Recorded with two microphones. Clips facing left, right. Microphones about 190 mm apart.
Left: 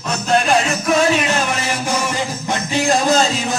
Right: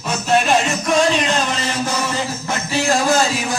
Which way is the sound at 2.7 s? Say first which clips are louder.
Left 1 dB; 20° left (ahead or behind).